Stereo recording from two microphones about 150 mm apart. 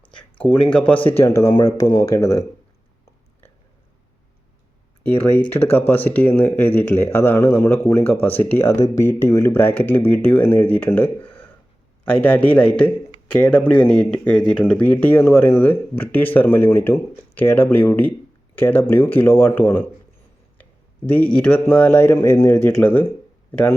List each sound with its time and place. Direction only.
0.7 s speech: 10° left (ahead or behind)
0.9 s speech: 35° left (ahead or behind)
1.5 s speech: 25° left (ahead or behind)
5.2 s speech: 10° left (ahead or behind)
21.4 s speech: 10° left (ahead or behind)